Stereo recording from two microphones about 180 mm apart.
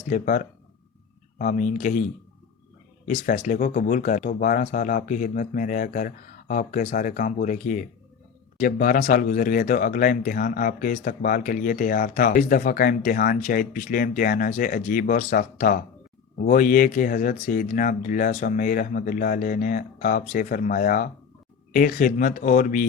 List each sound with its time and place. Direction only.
0.1 s speech: 45° left (ahead or behind)
3.1 s speech: 45° left (ahead or behind)